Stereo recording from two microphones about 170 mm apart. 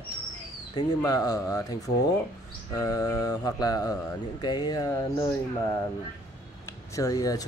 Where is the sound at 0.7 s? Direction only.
20° left (ahead or behind).